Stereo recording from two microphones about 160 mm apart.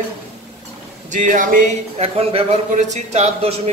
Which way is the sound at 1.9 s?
40° right (ahead or behind).